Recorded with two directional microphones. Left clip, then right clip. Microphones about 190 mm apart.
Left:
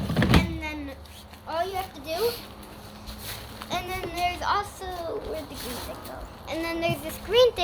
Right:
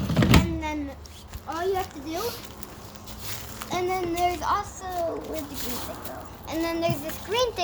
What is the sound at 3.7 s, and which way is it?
Speech, 20° left (ahead or behind).